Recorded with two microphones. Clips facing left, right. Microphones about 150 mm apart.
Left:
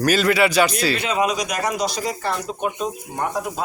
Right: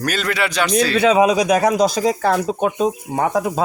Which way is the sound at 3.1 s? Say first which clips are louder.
Right 5 dB; 90° right.